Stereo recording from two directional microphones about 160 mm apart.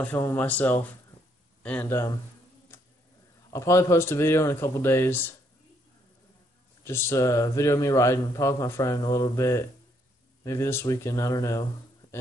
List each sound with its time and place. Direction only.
0.0 s speech: 15° left (ahead or behind)
3.4 s speech: 20° left (ahead or behind)
6.8 s a man's voice: 15° left (ahead or behind)